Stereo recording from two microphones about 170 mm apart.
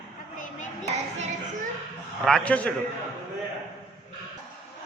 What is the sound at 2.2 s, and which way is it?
Speech, 5° left (ahead or behind).